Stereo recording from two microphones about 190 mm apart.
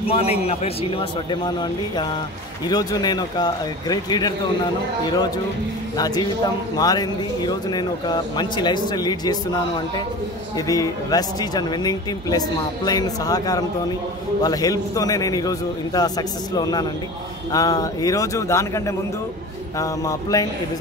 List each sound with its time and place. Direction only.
0.1 s speech: 30° left (ahead or behind)
5.9 s speech: 20° left (ahead or behind)
10.7 s speech: 20° left (ahead or behind)